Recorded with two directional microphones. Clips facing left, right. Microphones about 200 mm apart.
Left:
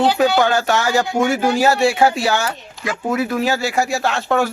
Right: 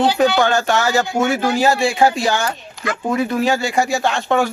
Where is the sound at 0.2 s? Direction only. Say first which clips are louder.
Even; 5° left (ahead or behind).